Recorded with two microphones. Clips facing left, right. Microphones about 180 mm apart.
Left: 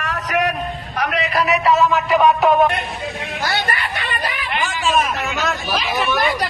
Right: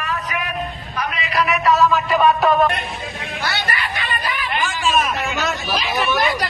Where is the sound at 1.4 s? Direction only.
30° left (ahead or behind).